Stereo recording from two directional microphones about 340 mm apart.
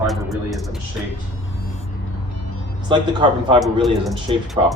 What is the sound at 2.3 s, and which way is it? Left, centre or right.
Vehicle, left.